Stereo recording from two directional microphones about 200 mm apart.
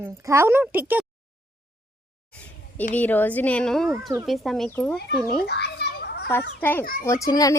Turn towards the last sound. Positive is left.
turn(degrees=15)  # may be behind; listen again after turning